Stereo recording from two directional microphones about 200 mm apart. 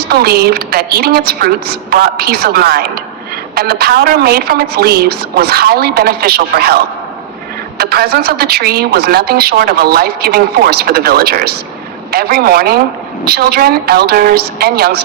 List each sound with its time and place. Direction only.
0.0 s a woman's voice: 50° right (ahead or behind)
7.8 s a woman's voice: 50° right (ahead or behind)